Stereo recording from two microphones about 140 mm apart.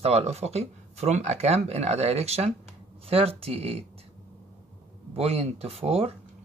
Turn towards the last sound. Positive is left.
turn(degrees=-45)  # may be behind; listen again after turning